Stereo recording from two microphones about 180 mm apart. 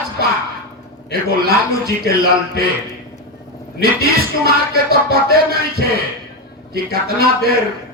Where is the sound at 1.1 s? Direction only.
60° right (ahead or behind).